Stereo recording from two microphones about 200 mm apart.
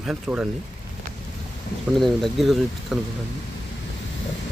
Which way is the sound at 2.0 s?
Centre (ahead or behind).